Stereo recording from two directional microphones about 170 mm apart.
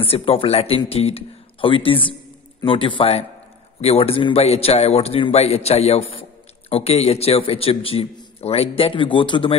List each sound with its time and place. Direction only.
0.0 s a man's voice: 35° left (ahead or behind)